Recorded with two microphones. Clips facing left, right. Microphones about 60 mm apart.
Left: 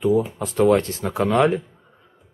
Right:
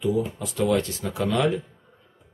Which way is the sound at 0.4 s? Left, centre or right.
Left.